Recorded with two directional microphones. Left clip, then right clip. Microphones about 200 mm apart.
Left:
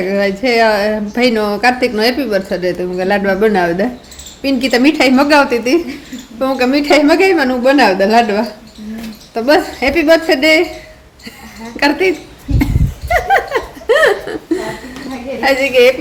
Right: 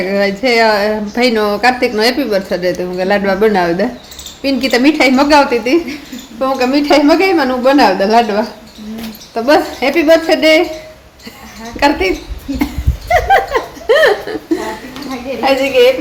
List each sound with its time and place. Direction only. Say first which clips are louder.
0.0 s a woman's voice: right 1 dB; 5° left (ahead or behind)
11.8 s a woman's voice: even; 10° left (ahead or behind)
13.1 s laughter: right 2 dB; 5° left (ahead or behind)
15.4 s a woman's voice: even; 10° left (ahead or behind)